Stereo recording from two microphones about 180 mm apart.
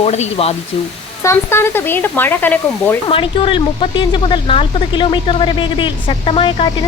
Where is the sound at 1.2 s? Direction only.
15° left (ahead or behind).